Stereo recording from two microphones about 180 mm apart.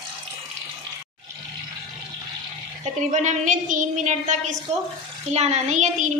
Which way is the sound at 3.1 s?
45° right (ahead or behind).